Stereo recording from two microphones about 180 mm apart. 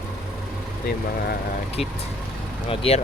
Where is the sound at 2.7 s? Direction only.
30° left (ahead or behind).